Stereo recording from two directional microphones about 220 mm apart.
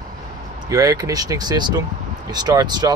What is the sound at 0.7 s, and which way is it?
Speech, 15° right (ahead or behind).